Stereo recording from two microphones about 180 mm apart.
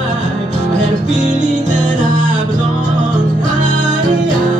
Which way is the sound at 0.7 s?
40° right (ahead or behind).